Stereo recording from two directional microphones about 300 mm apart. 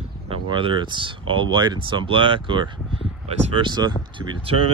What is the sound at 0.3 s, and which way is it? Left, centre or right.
Speech, centre.